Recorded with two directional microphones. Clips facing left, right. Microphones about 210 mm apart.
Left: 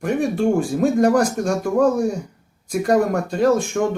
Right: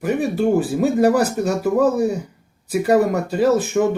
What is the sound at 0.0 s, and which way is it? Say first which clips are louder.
Speech: even; 5° right (ahead or behind).